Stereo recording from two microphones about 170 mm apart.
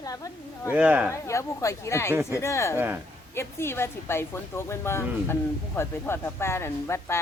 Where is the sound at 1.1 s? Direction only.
15° left (ahead or behind).